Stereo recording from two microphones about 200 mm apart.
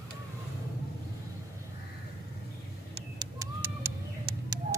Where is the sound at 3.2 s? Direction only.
15° right (ahead or behind).